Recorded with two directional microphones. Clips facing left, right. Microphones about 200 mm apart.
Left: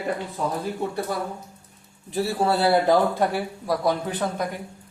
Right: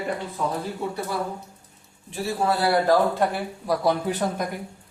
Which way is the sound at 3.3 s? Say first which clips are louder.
Even; centre (ahead or behind).